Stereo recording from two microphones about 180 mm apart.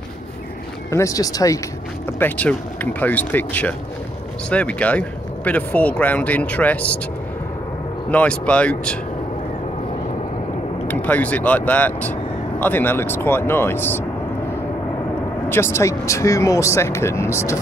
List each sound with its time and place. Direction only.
0.8 s speech: 15° left (ahead or behind)
8.1 s speech: 5° left (ahead or behind)
10.9 s speech: 10° left (ahead or behind)
15.5 s speech: 15° left (ahead or behind)